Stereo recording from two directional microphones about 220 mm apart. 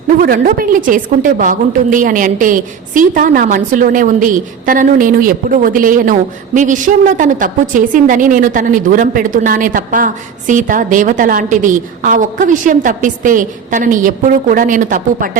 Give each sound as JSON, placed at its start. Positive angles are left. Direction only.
{"t": 0.2, "sound": "a woman's voice", "side_deg": -40}